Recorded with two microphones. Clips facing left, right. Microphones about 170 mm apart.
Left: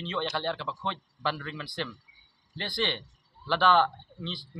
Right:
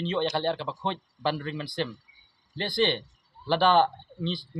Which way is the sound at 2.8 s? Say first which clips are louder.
Right 6 dB; 35° right (ahead or behind).